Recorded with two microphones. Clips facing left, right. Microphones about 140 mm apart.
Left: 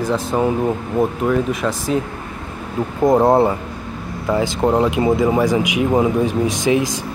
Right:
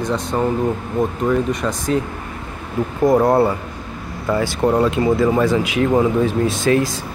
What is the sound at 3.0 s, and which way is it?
Speech, 25° left (ahead or behind).